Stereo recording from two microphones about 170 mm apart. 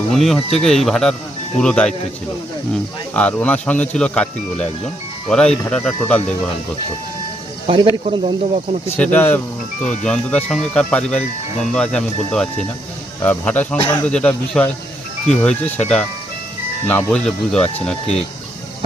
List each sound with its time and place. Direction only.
0.1 s speech: centre (ahead or behind)
3.2 s speech: 10° left (ahead or behind)
7.7 s speech: 30° right (ahead or behind)
9.0 s speech: 10° left (ahead or behind)